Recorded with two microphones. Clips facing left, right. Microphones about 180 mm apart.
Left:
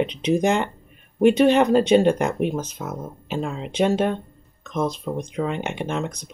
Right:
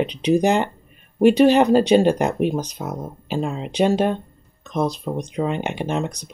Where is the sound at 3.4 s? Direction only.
20° right (ahead or behind).